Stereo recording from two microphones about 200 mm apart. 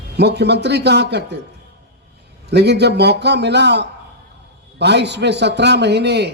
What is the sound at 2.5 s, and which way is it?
Speech, 55° right (ahead or behind).